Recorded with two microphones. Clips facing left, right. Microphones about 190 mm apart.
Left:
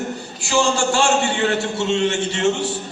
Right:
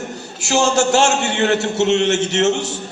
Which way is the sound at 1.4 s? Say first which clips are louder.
Right 4 dB; 75° right (ahead or behind).